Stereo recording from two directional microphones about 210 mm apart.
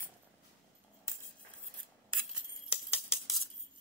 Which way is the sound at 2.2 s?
5° right (ahead or behind).